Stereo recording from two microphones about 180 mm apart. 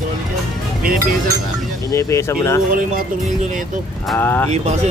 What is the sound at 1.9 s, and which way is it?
Speech, 15° left (ahead or behind).